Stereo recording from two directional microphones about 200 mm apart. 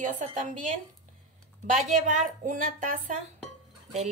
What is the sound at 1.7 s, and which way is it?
Speech, 40° right (ahead or behind).